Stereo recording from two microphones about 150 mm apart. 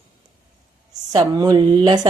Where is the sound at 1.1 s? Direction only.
25° right (ahead or behind).